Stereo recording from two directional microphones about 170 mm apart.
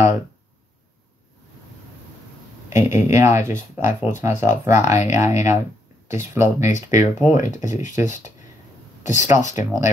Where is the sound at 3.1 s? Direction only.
15° right (ahead or behind).